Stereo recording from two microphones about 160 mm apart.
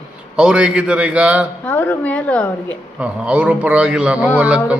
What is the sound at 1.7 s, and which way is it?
Speech, 10° left (ahead or behind).